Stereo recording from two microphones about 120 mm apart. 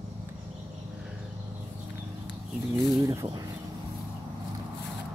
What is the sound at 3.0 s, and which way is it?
Speech, 30° right (ahead or behind).